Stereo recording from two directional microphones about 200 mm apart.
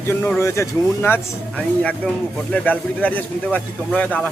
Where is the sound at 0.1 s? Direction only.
10° left (ahead or behind).